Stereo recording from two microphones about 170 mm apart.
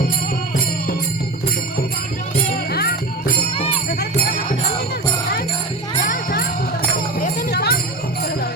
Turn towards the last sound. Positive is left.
turn(degrees=70)  # may be behind; listen again after turning